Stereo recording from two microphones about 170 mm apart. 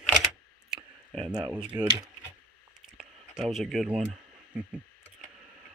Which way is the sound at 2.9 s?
Centre (ahead or behind).